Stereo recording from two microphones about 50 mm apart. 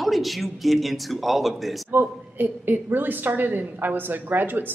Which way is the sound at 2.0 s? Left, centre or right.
Right.